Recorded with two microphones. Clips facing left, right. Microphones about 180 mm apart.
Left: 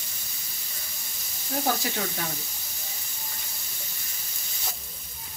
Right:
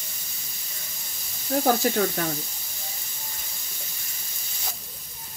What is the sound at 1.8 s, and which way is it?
Speech, 50° right (ahead or behind).